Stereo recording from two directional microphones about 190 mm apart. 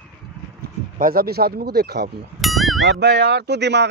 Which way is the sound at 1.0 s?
50° right (ahead or behind).